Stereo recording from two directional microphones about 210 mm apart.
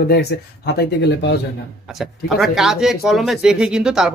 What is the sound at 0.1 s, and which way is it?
Speech, 50° left (ahead or behind).